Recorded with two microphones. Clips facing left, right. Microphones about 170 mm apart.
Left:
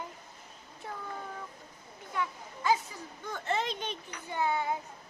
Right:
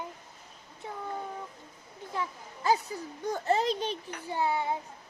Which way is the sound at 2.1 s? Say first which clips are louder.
Even; 35° right (ahead or behind).